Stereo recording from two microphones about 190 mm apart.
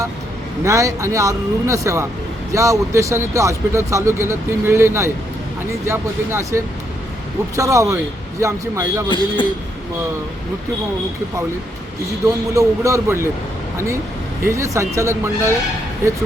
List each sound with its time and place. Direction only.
0.6 s speech: 15° right (ahead or behind)
9.0 s a man's voice: 25° left (ahead or behind)
12.2 s speech: 15° right (ahead or behind)
14.4 s speech: 15° right (ahead or behind)